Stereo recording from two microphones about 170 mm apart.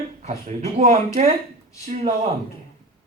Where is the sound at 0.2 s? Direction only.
40° right (ahead or behind).